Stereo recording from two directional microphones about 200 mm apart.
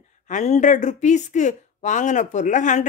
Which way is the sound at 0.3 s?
35° left (ahead or behind).